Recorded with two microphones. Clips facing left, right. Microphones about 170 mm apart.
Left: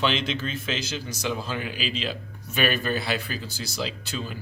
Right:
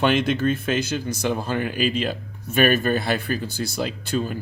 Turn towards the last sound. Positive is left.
turn(degrees=-50)  # may be behind; listen again after turning